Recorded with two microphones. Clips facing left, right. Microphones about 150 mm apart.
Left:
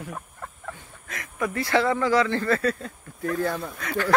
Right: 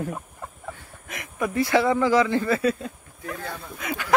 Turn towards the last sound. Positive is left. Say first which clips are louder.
# left 5 dB
turn(degrees=-15)  # may be behind; listen again after turning